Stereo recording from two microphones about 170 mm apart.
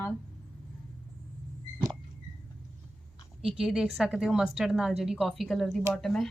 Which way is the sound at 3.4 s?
5° right (ahead or behind).